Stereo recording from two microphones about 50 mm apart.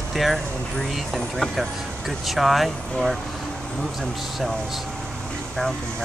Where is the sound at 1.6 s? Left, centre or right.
Centre.